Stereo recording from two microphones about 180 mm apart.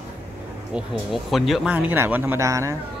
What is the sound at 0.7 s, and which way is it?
Speech, centre (ahead or behind).